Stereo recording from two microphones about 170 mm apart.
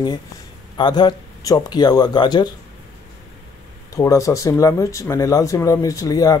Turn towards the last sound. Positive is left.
turn(degrees=20)  # may be behind; listen again after turning